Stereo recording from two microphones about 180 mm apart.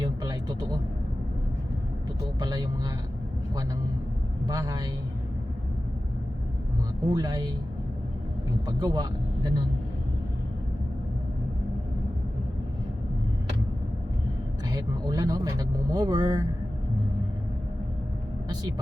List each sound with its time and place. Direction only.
0.0 s vehicle: 25° right (ahead or behind)
2.4 s vehicle: 20° right (ahead or behind)
4.4 s a sound: 20° right (ahead or behind)
7.0 s speech: 20° right (ahead or behind)
8.6 s speech: 20° right (ahead or behind)
14.7 s speech: 20° right (ahead or behind)